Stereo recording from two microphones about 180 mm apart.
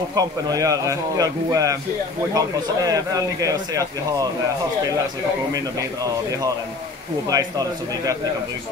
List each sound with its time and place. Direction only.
0.1 s a man's voice: 20° right (ahead or behind)
7.2 s a man's voice: 20° right (ahead or behind)